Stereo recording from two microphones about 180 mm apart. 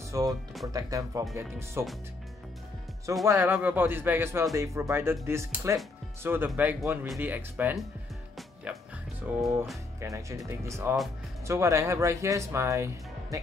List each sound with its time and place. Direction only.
0.1 s speech: 20° right (ahead or behind)
3.3 s speech: 10° right (ahead or behind)
9.3 s speech: 10° right (ahead or behind)